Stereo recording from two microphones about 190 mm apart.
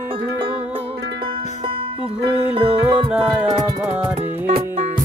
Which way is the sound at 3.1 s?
5° right (ahead or behind).